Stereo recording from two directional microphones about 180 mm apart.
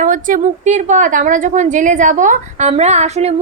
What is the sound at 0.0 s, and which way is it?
A woman's voice, 45° right (ahead or behind).